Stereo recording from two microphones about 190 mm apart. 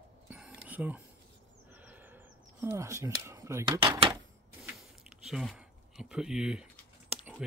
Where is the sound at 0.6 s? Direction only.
10° right (ahead or behind).